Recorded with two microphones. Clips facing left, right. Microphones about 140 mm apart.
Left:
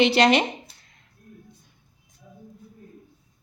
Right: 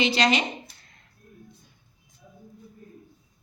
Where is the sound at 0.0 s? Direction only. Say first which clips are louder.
Left 5 dB; 65° left (ahead or behind).